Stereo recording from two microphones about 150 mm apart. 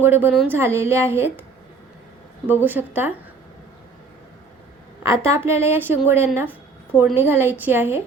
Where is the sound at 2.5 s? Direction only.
10° right (ahead or behind).